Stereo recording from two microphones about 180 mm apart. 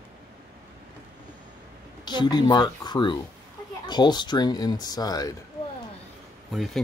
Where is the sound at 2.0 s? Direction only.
25° left (ahead or behind).